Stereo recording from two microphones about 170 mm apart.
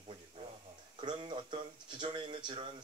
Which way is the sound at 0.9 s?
25° right (ahead or behind).